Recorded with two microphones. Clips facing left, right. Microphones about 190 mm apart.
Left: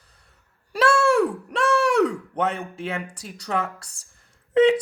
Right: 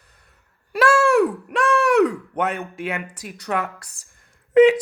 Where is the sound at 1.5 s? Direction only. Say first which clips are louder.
Right 2 dB; 30° left (ahead or behind).